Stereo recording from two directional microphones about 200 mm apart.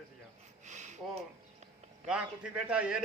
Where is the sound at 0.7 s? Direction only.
35° right (ahead or behind).